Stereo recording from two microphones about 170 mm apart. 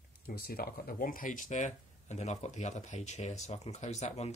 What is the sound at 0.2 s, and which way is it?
Speech, 60° left (ahead or behind).